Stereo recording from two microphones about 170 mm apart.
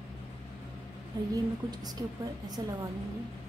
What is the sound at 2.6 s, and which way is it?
Speech, 25° right (ahead or behind).